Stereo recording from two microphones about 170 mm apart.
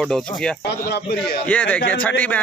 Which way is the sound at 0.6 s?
70° left (ahead or behind).